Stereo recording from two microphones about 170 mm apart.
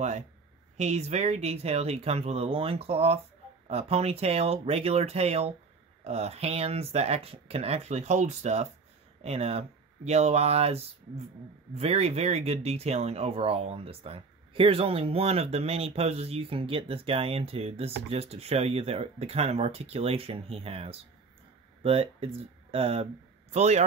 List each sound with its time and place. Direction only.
0.7 s speech: 40° right (ahead or behind)